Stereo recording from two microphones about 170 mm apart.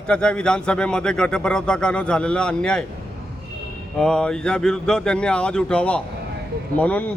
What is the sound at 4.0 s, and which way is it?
A man's voice, 5° left (ahead or behind).